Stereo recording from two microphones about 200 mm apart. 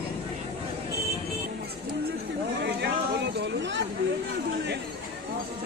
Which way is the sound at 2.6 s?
60° right (ahead or behind).